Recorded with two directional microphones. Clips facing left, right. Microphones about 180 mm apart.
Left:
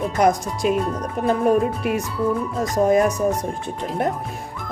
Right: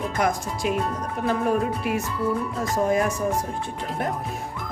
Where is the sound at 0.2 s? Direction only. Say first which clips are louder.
Left 7 dB; 20° left (ahead or behind).